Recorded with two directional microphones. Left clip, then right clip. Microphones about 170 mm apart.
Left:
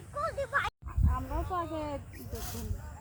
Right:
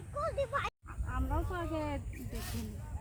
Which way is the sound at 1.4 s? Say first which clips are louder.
Left 3 dB; 10° right (ahead or behind).